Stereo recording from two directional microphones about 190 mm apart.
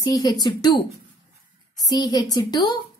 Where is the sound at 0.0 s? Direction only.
20° left (ahead or behind).